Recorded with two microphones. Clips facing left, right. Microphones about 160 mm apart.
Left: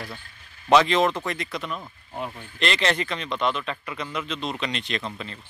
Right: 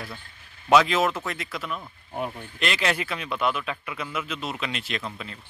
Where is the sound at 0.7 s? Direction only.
5° right (ahead or behind).